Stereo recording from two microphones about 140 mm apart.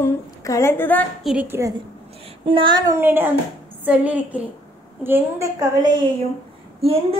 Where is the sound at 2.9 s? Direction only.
15° right (ahead or behind); by 6.1 s 30° right (ahead or behind).